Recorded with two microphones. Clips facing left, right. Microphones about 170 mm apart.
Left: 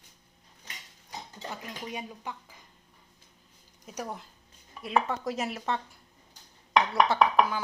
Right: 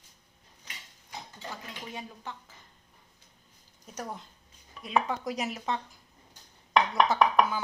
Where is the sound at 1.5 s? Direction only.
15° left (ahead or behind).